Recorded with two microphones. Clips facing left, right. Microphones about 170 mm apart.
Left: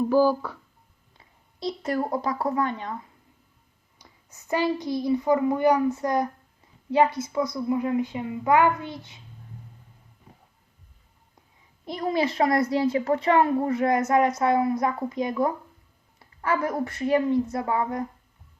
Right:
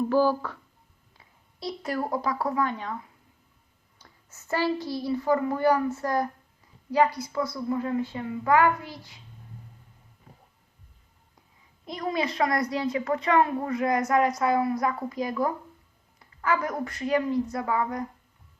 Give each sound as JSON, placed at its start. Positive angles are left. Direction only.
{"t": 0.0, "sound": "speech", "side_deg": 10}
{"t": 1.5, "sound": "a woman's voice", "side_deg": 20}
{"t": 3.9, "sound": "a woman's voice", "side_deg": 15}
{"t": 11.9, "sound": "a child's voice", "side_deg": 30}
{"t": 16.1, "sound": "a sound", "side_deg": 30}
{"t": 16.8, "sound": "a child's voice", "side_deg": 25}